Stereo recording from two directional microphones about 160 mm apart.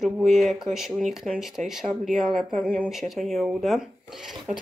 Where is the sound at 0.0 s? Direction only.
Centre (ahead or behind).